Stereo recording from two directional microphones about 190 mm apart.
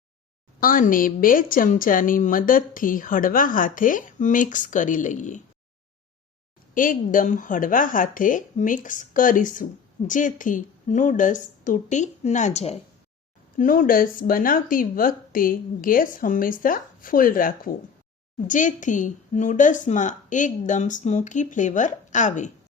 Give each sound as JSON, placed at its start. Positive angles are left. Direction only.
{"t": 0.6, "sound": "a woman's voice", "side_deg": 45}
{"t": 6.7, "sound": "a woman's voice", "side_deg": 45}
{"t": 13.6, "sound": "a woman's voice", "side_deg": 45}